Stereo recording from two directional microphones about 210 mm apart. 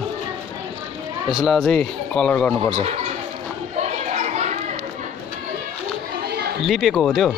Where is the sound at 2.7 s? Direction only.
30° right (ahead or behind).